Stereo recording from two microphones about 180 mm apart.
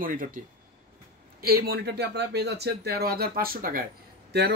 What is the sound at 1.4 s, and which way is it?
Speech, 60° right (ahead or behind).